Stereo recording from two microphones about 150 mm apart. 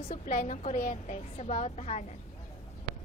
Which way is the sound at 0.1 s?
50° left (ahead or behind).